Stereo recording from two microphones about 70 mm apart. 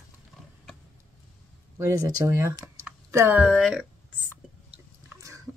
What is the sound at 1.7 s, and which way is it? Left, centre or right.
Speech, right.